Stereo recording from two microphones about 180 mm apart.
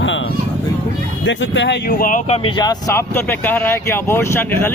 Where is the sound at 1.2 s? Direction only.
90° left.